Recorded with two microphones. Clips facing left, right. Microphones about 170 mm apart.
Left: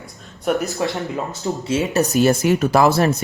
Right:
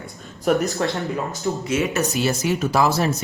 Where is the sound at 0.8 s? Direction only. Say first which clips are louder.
Left 1 dB; 20° left (ahead or behind).